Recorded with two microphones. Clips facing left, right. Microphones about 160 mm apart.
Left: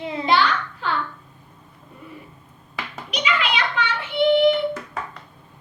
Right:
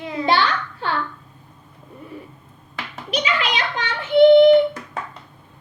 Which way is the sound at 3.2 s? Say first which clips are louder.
Left 2 dB; 40° right (ahead or behind).